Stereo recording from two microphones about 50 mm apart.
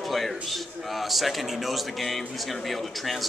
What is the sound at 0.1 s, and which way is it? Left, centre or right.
A man's voice, centre.